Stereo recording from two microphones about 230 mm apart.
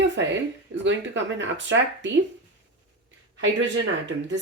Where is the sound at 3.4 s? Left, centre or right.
Right.